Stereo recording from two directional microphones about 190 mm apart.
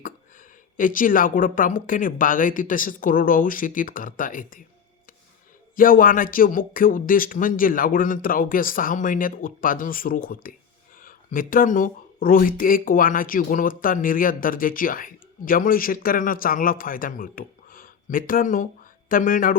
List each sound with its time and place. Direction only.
0.0 s speech: 45° left (ahead or behind)
5.7 s speech: 50° left (ahead or behind)